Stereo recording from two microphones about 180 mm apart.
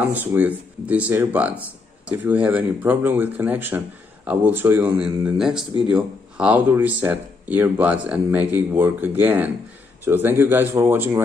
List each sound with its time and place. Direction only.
0.0 s speech: 10° right (ahead or behind)